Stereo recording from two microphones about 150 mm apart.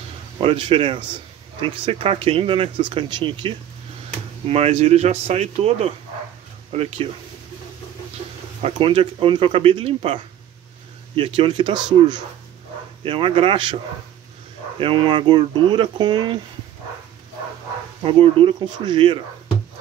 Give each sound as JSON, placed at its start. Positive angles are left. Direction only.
{"t": 0.4, "sound": "speech", "side_deg": -40}
{"t": 4.5, "sound": "speech", "side_deg": -45}
{"t": 8.6, "sound": "speech", "side_deg": -35}
{"t": 13.0, "sound": "speech", "side_deg": -35}
{"t": 14.8, "sound": "speech", "side_deg": -35}
{"t": 18.0, "sound": "speech", "side_deg": -40}